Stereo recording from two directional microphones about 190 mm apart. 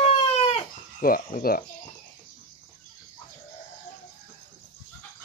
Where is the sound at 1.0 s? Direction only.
50° left (ahead or behind).